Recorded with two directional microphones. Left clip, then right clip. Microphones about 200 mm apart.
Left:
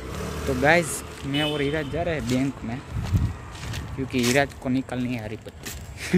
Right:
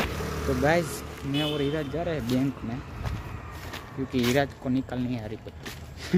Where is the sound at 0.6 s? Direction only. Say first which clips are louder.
Left 5 dB; 10° left (ahead or behind).